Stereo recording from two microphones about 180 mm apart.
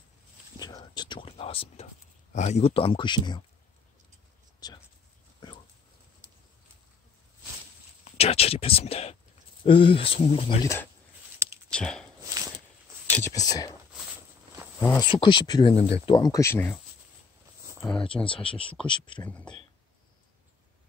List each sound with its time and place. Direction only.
0.6 s speech: 20° left (ahead or behind)
4.6 s speech: 20° left (ahead or behind)
8.0 s speech: 35° left (ahead or behind)
10.6 s speech: 15° left (ahead or behind)
11.4 s clicking: 15° right (ahead or behind)
11.7 s speech: 5° left (ahead or behind)
12.2 s a sound: 20° right (ahead or behind)
13.1 s speech: 15° left (ahead or behind)
14.8 s speech: 15° left (ahead or behind)
15.0 s speech: 30° left (ahead or behind); by 16.7 s 15° left (ahead or behind)
18.0 s speech: 30° left (ahead or behind)
19.2 s speech: 10° left (ahead or behind)